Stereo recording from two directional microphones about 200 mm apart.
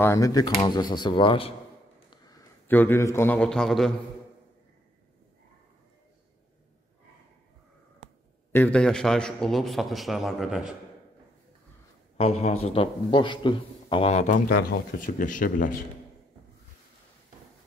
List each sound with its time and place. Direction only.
0.0 s a man's voice: 15° left (ahead or behind)
8.5 s a man's voice: 10° left (ahead or behind)
12.2 s a man's voice: 30° left (ahead or behind)